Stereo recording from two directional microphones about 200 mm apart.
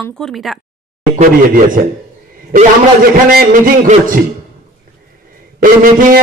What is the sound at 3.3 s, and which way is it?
Speech, 50° right (ahead or behind).